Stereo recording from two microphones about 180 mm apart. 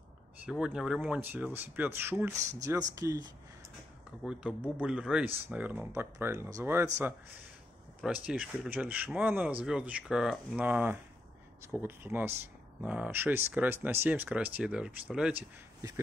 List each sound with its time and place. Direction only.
0.5 s speech: 5° right (ahead or behind)
4.2 s speech: 5° right (ahead or behind)
8.0 s speech: 5° right (ahead or behind)